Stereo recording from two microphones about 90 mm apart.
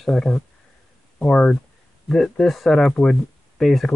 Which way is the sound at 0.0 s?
Centre (ahead or behind).